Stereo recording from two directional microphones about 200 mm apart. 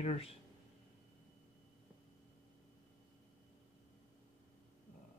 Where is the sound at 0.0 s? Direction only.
30° left (ahead or behind).